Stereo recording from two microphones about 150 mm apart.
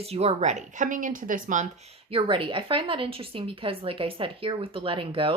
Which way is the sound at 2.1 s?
35° right (ahead or behind).